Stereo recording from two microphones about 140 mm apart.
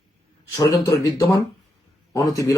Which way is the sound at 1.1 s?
25° left (ahead or behind).